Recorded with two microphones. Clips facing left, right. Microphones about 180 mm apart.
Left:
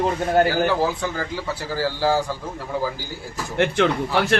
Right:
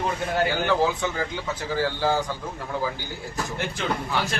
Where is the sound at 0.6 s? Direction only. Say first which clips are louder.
Left 1 dB; 5° left (ahead or behind).